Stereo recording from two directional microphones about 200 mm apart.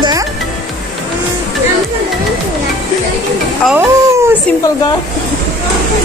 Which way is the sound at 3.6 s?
10° right (ahead or behind).